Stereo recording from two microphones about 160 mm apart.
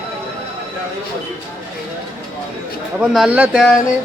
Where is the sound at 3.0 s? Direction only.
5° right (ahead or behind).